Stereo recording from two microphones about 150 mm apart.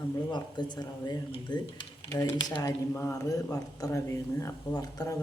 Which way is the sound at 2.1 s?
20° left (ahead or behind).